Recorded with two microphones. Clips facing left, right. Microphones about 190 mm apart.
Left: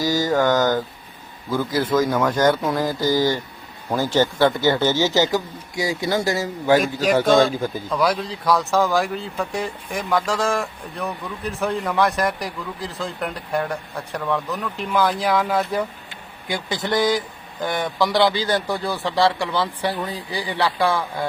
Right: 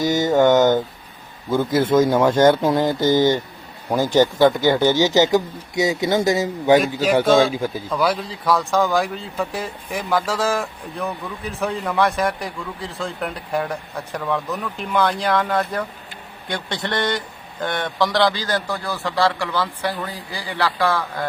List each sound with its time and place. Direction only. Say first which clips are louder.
0.0 s speech: right 3 dB; 20° right (ahead or behind)
7.3 s speech: right 1 dB; centre (ahead or behind); by 21.2 s 15° left (ahead or behind)